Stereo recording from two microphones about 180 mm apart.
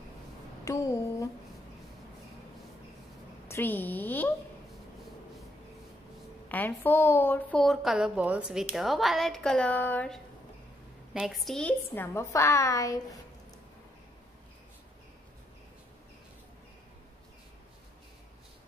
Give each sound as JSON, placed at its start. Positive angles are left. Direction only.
{"t": 0.7, "sound": "a sound", "side_deg": 15}
{"t": 3.4, "sound": "a woman's voice", "side_deg": 10}
{"t": 6.5, "sound": "a woman's voice", "side_deg": 10}